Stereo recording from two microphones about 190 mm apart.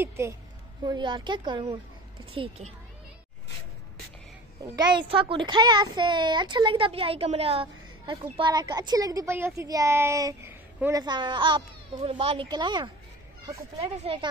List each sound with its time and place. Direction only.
0.8 s a woman's voice: 25° right (ahead or behind)
4.7 s a woman's voice: 25° right (ahead or behind)